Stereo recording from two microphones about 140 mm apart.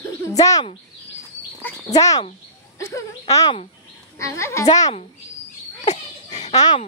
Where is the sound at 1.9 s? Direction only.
25° left (ahead or behind).